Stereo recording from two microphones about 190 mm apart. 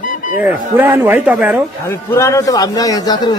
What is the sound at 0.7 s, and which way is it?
Speech, 10° right (ahead or behind).